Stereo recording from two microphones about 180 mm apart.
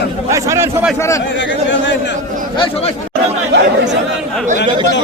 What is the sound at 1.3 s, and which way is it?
Speech, 90° left.